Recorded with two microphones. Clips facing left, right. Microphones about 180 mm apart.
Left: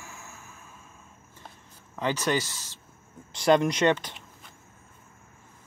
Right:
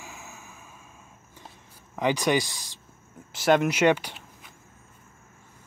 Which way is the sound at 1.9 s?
15° right (ahead or behind).